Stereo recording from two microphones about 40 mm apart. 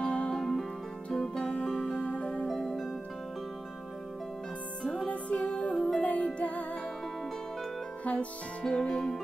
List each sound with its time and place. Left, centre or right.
0.0 s music: left
0.4 s music: centre
2.0 s music: left
2.6 s harp: centre
5.0 s music: left
5.5 s music: left
5.9 s music: left
8.0 s music: left
8.6 s music: centre